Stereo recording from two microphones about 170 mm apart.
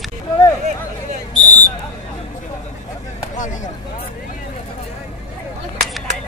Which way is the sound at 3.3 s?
50° left (ahead or behind).